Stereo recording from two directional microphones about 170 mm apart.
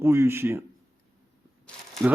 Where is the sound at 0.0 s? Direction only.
15° right (ahead or behind).